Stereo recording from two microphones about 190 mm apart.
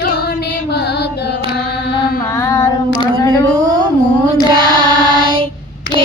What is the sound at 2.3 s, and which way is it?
Child singing, 15° left (ahead or behind).